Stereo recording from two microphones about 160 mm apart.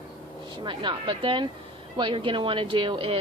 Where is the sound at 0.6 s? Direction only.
30° right (ahead or behind).